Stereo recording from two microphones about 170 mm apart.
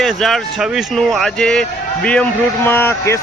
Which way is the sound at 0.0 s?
Centre (ahead or behind).